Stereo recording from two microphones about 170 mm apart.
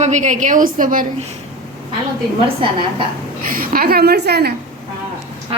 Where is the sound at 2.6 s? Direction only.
30° right (ahead or behind).